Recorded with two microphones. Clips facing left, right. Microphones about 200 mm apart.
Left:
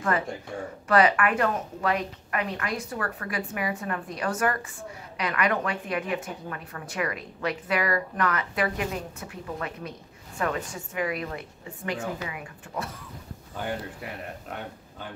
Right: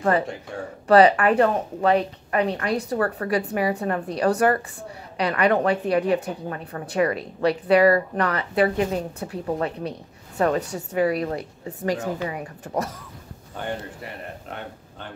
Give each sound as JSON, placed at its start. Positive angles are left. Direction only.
{"t": 0.8, "sound": "a woman's voice", "side_deg": -35}